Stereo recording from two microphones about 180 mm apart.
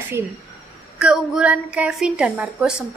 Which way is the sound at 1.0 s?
5° right (ahead or behind).